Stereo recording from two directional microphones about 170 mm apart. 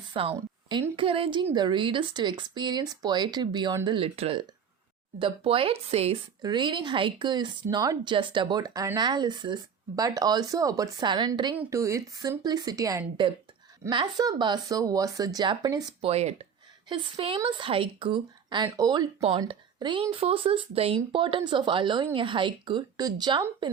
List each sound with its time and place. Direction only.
0.1 s speech: 35° right (ahead or behind)
11.5 s speech: 15° right (ahead or behind)
16.0 s speech: 35° right (ahead or behind)